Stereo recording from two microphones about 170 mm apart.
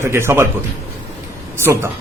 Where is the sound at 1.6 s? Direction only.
15° right (ahead or behind).